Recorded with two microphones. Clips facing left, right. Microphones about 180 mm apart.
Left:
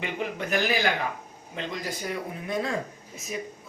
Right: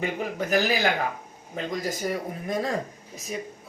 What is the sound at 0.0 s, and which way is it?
Speech, 40° right (ahead or behind).